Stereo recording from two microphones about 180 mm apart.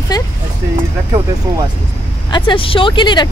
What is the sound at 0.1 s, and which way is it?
Speech, 25° left (ahead or behind).